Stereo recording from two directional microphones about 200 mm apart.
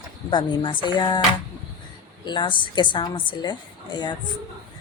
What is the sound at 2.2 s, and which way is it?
Speech, 25° left (ahead or behind).